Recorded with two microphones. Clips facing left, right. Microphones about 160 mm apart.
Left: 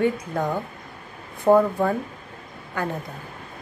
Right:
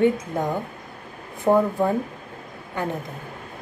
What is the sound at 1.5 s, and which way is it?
Speech, 5° left (ahead or behind).